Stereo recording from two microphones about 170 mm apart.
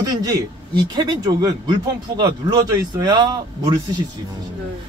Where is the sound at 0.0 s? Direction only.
20° right (ahead or behind).